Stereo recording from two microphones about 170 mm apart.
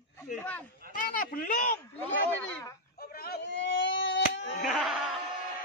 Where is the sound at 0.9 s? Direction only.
55° left (ahead or behind).